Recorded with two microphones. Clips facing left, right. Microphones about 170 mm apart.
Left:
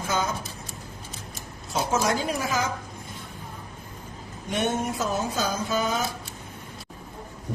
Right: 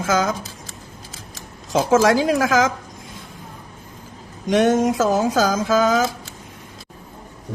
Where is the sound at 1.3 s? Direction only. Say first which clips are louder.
Right 8 dB; 90° right.